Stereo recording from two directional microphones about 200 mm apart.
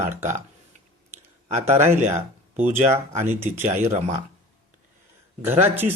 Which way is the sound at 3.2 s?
10° right (ahead or behind).